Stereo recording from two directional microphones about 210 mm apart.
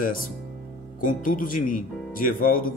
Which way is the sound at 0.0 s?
40° left (ahead or behind).